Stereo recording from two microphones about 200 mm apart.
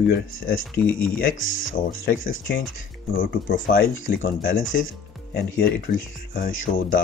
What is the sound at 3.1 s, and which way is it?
Speech, 45° left (ahead or behind).